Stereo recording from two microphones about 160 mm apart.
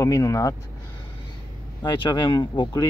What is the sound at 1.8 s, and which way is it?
Speech, 30° left (ahead or behind).